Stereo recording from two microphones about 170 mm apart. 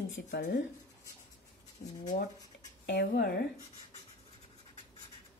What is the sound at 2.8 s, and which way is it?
Speech, 75° left (ahead or behind).